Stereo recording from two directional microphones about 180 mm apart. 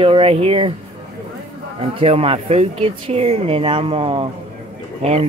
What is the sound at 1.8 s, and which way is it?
Speech, 30° right (ahead or behind).